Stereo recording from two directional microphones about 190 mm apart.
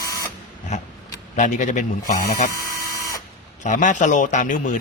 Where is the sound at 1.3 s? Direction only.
40° left (ahead or behind).